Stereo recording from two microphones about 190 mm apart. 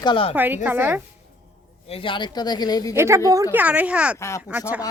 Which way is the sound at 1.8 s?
30° left (ahead or behind).